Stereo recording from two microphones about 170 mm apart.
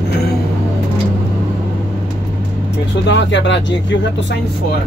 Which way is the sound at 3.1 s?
90° left.